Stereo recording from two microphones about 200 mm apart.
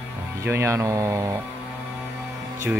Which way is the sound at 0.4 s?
15° right (ahead or behind).